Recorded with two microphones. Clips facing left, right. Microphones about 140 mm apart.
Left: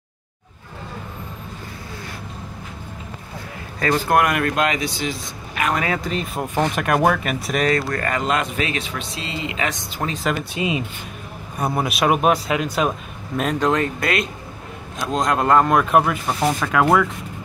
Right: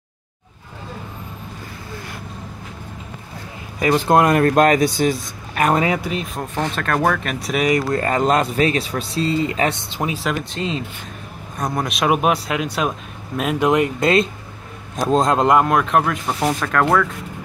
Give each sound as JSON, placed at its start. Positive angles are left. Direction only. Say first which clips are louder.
{"t": 3.8, "sound": "speech", "louder": "right 3 dB", "side_deg": -20}
{"t": 5.9, "sound": "speech", "louder": "right 1 dB", "side_deg": -5}
{"t": 6.3, "sound": "speech", "louder": "left 2 dB", "side_deg": 10}
{"t": 7.6, "sound": "speech", "louder": "right 3 dB", "side_deg": -20}
{"t": 8.2, "sound": "speech", "louder": "right 8 dB", "side_deg": -35}
{"t": 10.5, "sound": "speech", "louder": "left 1 dB", "side_deg": 10}
{"t": 15.6, "sound": "speech", "louder": "left 1 dB", "side_deg": 0}